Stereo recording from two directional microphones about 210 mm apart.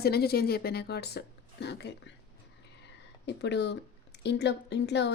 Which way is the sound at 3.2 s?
55° left (ahead or behind).